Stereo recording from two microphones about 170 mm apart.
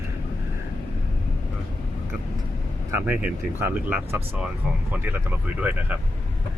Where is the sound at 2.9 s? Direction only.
10° right (ahead or behind).